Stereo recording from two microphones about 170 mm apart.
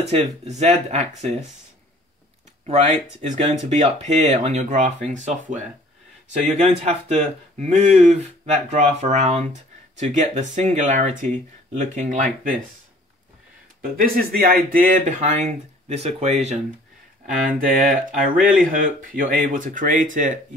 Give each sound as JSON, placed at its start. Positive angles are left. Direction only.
{"t": 0.1, "sound": "speech", "side_deg": -40}
{"t": 2.6, "sound": "speech", "side_deg": -40}
{"t": 6.6, "sound": "speech", "side_deg": -40}
{"t": 13.7, "sound": "speech", "side_deg": -60}
{"t": 17.5, "sound": "a sound", "side_deg": -55}
{"t": 18.9, "sound": "speech", "side_deg": -55}